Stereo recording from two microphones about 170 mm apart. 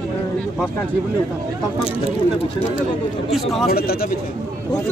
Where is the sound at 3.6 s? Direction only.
65° left (ahead or behind).